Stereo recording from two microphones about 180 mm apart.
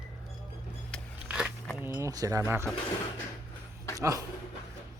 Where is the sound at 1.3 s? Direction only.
5° right (ahead or behind).